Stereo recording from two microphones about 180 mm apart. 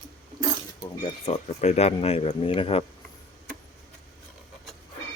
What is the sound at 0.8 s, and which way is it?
Speech, 30° left (ahead or behind).